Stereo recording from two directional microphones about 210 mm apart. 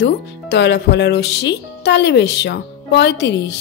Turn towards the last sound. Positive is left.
turn(degrees=55)  # may be behind; listen again after turning